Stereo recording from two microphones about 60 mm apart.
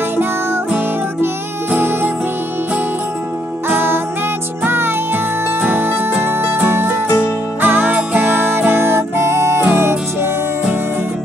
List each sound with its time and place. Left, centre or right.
1.7 s music: right
3.6 s music: right